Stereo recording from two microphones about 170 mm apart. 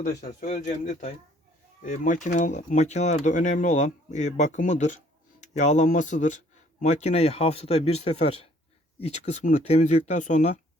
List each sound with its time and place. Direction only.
0.3 s speech: 45° left (ahead or behind)